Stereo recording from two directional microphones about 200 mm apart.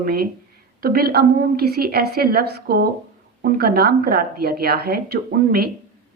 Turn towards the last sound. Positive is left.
turn(degrees=-50)  # may be behind; listen again after turning